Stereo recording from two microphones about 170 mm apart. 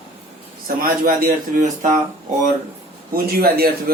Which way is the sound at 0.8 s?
55° right (ahead or behind).